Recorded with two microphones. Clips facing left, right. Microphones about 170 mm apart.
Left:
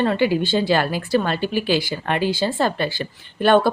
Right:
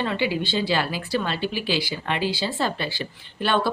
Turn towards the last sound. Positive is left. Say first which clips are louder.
# left 7 dB
turn(degrees=50)  # may be behind; listen again after turning